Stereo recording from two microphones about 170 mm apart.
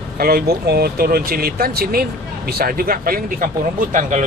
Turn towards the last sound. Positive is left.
turn(degrees=-50)  # may be behind; listen again after turning